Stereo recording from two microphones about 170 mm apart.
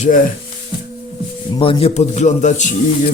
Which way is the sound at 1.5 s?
35° left (ahead or behind).